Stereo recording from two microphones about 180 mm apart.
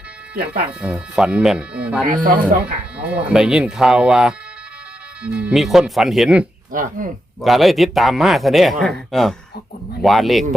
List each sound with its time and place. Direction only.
0.8 s speech: 5° right (ahead or behind)
2.0 s speech: 50° right (ahead or behind)
3.0 s speech: 5° right (ahead or behind)
6.7 s speech: 50° right (ahead or behind)
7.4 s speech: centre (ahead or behind)